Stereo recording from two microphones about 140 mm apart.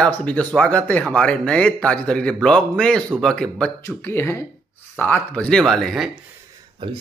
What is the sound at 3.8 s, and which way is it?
Speech, 15° left (ahead or behind).